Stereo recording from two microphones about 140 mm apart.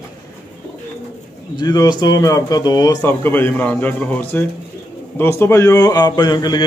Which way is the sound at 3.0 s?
15° left (ahead or behind).